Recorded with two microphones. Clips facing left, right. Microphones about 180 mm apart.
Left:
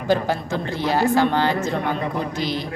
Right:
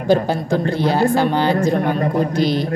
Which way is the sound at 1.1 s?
15° right (ahead or behind).